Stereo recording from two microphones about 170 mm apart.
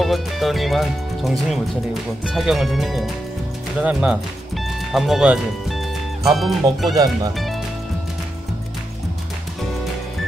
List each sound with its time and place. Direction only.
0.0 s speech: centre (ahead or behind)
3.8 s music: 5° right (ahead or behind)
6.9 s speech: 20° right (ahead or behind)
7.3 s music: centre (ahead or behind)